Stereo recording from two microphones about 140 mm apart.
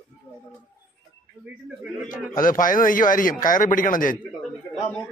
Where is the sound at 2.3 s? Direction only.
75° left (ahead or behind).